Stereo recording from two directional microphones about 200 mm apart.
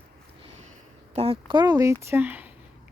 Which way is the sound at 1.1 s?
30° right (ahead or behind).